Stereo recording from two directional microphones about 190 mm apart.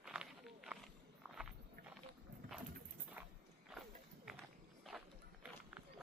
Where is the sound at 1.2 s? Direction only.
5° right (ahead or behind).